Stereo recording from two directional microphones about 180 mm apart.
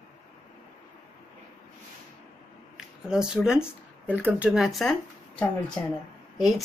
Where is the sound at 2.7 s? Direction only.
5° right (ahead or behind).